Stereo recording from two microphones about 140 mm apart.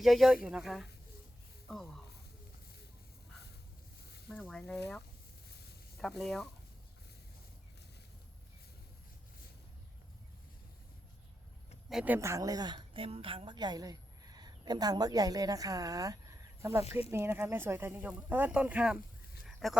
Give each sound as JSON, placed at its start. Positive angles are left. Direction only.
{"t": 0.0, "sound": "speech", "side_deg": 0}
{"t": 4.3, "sound": "speech", "side_deg": 5}
{"t": 11.9, "sound": "speech", "side_deg": -5}
{"t": 12.1, "sound": "a woman's voice", "side_deg": -20}
{"t": 19.5, "sound": "a sound", "side_deg": 0}